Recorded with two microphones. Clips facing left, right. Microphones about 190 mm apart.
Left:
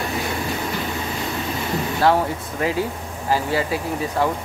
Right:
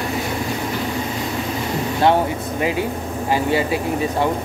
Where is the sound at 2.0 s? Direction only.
20° right (ahead or behind).